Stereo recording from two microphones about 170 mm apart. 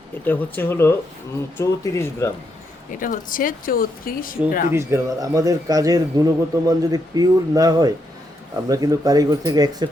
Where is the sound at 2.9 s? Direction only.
50° left (ahead or behind).